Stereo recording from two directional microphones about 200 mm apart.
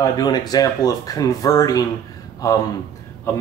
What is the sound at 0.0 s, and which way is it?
A man's voice, 20° left (ahead or behind).